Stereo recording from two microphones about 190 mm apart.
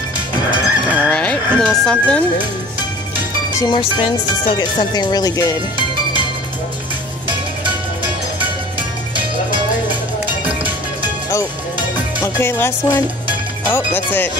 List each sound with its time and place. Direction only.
0.9 s speech: 5° left (ahead or behind)
3.5 s speech: 25° left (ahead or behind)
11.0 s music: 15° left (ahead or behind)
12.2 s speech: 10° left (ahead or behind)